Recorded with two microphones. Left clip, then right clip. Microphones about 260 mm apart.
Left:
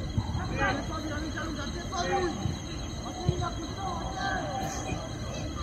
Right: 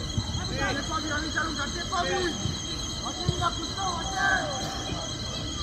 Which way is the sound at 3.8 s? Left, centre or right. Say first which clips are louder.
Right 6 dB; right.